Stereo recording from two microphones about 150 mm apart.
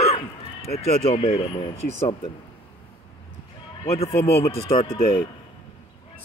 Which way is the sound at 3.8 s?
40° left (ahead or behind).